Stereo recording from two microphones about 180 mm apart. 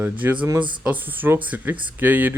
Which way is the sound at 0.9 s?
10° right (ahead or behind).